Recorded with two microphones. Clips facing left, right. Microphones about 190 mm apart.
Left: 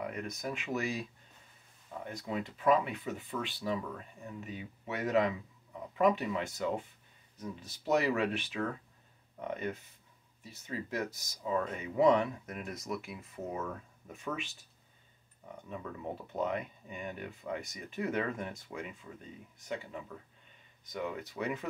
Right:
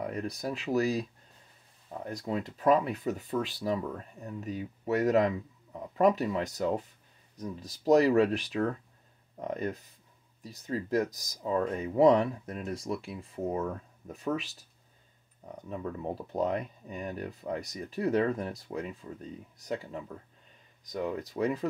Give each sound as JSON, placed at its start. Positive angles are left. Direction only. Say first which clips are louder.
{"t": 0.0, "sound": "speech", "louder": "right 4 dB", "side_deg": -35}
{"t": 2.0, "sound": "speech", "louder": "right 4 dB", "side_deg": -40}
{"t": 15.5, "sound": "speech", "louder": "right 6 dB", "side_deg": -35}